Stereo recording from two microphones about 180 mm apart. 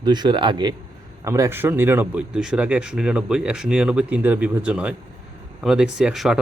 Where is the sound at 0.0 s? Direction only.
25° right (ahead or behind).